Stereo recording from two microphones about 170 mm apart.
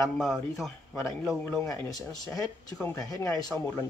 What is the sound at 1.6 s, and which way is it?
Speech, 20° left (ahead or behind).